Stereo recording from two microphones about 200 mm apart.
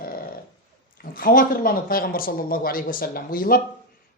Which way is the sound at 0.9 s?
45° left (ahead or behind).